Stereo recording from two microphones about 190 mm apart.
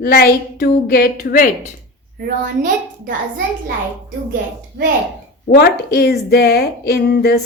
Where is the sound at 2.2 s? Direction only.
50° right (ahead or behind).